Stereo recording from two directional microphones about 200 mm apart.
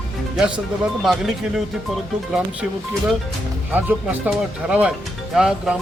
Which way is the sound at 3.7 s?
10° right (ahead or behind).